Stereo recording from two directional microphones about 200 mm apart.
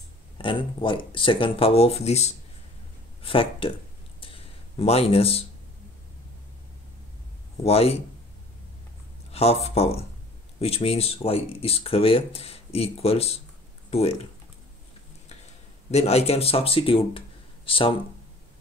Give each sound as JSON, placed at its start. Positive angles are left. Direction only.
{"t": 0.4, "sound": "speech", "side_deg": 25}
{"t": 4.2, "sound": "a sound", "side_deg": 30}
{"t": 7.6, "sound": "speech", "side_deg": 30}
{"t": 9.3, "sound": "speech", "side_deg": 30}
{"t": 15.2, "sound": "speech", "side_deg": 35}